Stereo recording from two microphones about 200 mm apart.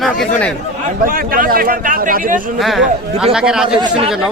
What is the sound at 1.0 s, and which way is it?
A man's voice, 45° right (ahead or behind).